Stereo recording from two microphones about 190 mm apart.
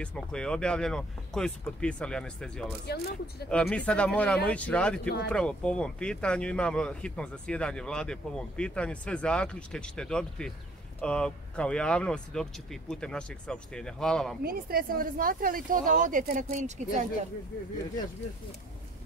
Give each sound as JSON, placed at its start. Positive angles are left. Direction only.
{"t": 0.0, "sound": "speech", "side_deg": 5}
{"t": 2.9, "sound": "speech", "side_deg": 55}
{"t": 3.4, "sound": "speech", "side_deg": 5}
{"t": 14.4, "sound": "speech", "side_deg": -50}